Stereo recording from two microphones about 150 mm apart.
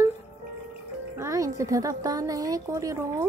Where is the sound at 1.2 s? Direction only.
20° right (ahead or behind).